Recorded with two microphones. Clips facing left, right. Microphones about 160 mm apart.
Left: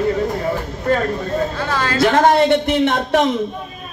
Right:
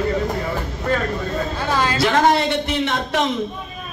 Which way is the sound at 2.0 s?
50° left (ahead or behind).